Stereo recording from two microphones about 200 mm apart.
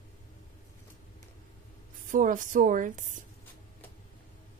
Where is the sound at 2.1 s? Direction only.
40° right (ahead or behind).